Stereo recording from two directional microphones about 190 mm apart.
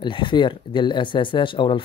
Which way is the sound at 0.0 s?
25° left (ahead or behind).